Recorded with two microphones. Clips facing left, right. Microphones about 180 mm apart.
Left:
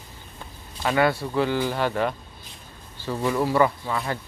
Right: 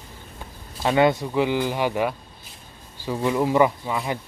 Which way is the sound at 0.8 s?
20° right (ahead or behind).